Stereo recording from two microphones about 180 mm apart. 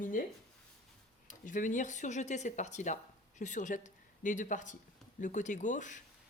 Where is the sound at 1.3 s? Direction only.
45° left (ahead or behind).